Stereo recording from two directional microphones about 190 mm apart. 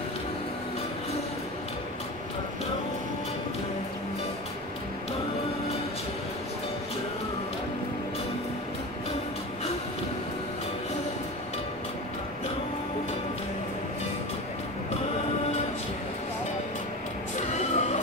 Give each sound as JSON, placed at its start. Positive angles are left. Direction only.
{"t": 17.6, "sound": "music", "side_deg": 35}